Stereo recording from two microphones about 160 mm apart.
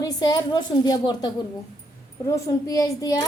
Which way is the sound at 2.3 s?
20° left (ahead or behind).